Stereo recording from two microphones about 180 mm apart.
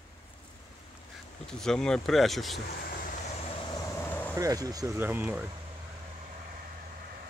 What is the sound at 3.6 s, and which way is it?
Vehicle, 15° left (ahead or behind).